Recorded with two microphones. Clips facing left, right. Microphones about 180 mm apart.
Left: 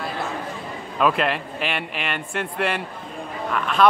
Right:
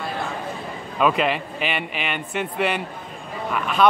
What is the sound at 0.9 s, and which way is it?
Speech, centre (ahead or behind).